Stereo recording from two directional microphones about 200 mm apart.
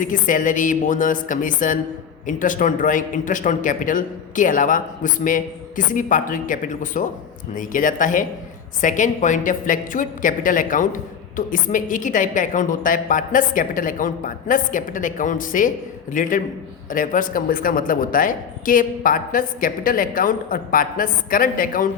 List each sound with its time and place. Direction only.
0.0 s a man's voice: 40° left (ahead or behind)